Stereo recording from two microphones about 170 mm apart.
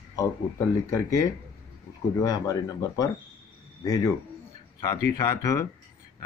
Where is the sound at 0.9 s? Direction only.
20° left (ahead or behind).